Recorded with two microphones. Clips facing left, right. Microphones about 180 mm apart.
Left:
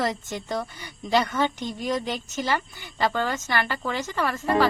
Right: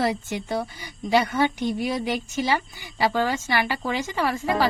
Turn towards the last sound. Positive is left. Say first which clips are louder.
# even
turn(degrees=-10)  # may be behind; listen again after turning